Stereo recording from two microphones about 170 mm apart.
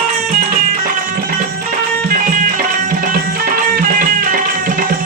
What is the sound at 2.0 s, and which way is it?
Music, 55° right (ahead or behind).